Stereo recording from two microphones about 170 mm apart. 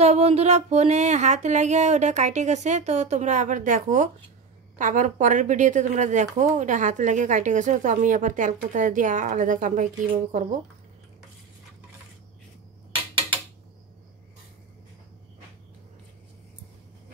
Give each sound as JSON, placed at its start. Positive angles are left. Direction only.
{"t": 0.0, "sound": "speech", "side_deg": -40}